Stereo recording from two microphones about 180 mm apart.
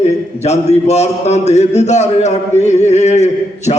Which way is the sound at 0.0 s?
35° left (ahead or behind).